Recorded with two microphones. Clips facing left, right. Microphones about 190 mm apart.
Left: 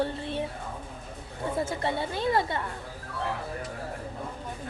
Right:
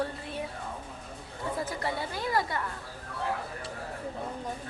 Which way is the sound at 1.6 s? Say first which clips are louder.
Left 5 dB; 25° left (ahead or behind).